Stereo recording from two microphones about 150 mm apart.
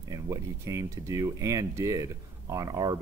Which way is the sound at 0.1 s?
20° right (ahead or behind).